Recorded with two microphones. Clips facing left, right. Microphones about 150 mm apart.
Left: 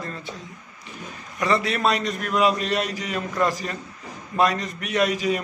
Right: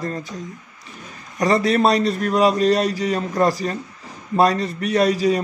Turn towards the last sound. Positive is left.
turn(degrees=-35)  # may be behind; listen again after turning